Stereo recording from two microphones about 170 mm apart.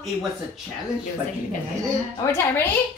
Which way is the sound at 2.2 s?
20° left (ahead or behind).